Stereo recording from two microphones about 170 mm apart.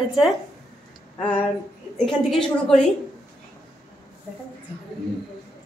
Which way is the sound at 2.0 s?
Centre (ahead or behind).